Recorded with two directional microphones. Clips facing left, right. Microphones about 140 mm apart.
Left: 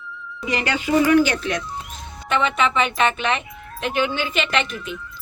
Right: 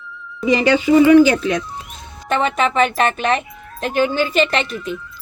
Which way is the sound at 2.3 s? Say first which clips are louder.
Right 3 dB; 40° right (ahead or behind).